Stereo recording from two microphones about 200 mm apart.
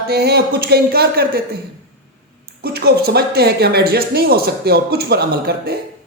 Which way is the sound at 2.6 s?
50° right (ahead or behind).